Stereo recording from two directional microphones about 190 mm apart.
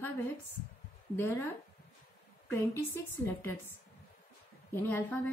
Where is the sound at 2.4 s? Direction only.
10° left (ahead or behind).